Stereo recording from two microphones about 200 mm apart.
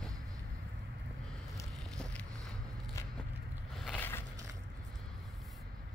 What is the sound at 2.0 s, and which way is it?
Vehicle, 5° left (ahead or behind).